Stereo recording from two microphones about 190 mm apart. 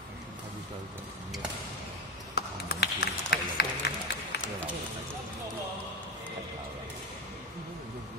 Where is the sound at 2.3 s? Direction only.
55° left (ahead or behind).